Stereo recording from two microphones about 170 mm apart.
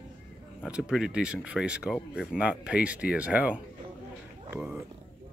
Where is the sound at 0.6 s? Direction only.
5° right (ahead or behind).